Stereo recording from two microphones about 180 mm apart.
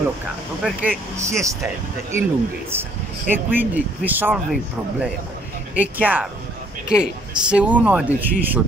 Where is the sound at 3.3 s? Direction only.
10° right (ahead or behind).